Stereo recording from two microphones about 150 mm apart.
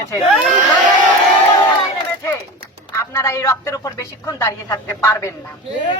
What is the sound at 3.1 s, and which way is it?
A man's voice, 20° left (ahead or behind).